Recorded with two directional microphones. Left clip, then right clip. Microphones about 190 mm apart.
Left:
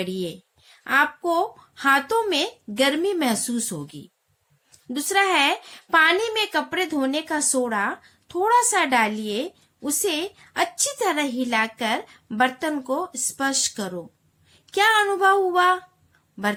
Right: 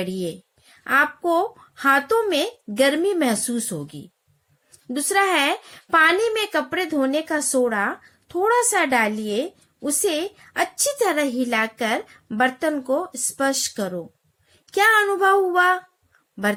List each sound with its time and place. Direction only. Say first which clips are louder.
0.0 s a woman's voice: right 1 dB; 25° right (ahead or behind)